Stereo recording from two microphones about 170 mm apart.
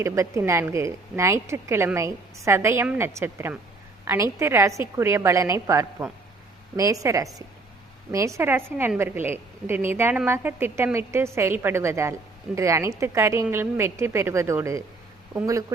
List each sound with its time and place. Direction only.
0.0 s a woman's voice: 15° right (ahead or behind)